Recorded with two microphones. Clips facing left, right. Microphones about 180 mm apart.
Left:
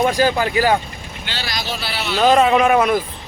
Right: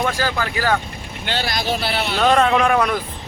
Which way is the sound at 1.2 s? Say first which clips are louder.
Right 5 dB; 50° right (ahead or behind).